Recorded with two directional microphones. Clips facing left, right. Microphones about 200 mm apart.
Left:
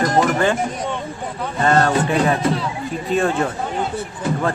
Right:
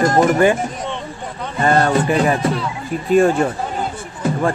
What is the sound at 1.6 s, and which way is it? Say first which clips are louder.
Speech: right 1 dB; 10° right (ahead or behind).